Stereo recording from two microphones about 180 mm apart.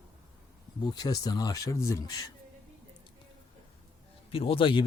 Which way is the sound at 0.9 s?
20° left (ahead or behind).